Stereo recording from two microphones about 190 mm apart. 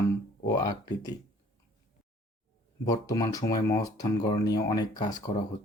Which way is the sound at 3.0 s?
20° left (ahead or behind).